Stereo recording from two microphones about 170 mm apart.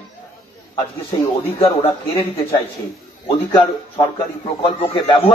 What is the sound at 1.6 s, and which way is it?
Speech, 35° left (ahead or behind).